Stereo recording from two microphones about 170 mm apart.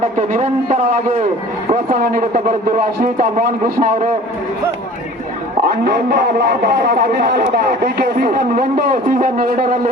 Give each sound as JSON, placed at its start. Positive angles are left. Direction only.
{"t": 0.2, "sound": "a man's voice", "side_deg": -45}
{"t": 5.6, "sound": "speech", "side_deg": -65}